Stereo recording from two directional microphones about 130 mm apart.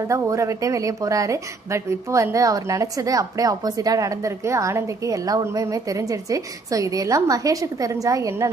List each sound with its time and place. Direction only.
0.1 s a woman's voice: 25° right (ahead or behind)